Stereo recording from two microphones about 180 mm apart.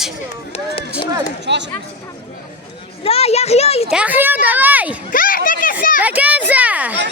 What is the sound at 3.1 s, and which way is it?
Speech, 35° left (ahead or behind).